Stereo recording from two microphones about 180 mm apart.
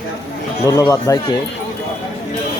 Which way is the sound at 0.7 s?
20° left (ahead or behind).